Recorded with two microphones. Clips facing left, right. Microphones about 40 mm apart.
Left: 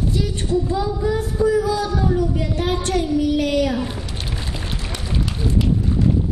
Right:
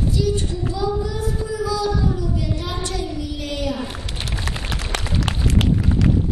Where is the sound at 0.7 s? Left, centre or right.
Left.